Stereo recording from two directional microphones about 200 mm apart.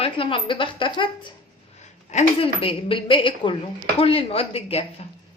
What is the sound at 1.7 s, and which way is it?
A woman's voice, 35° left (ahead or behind).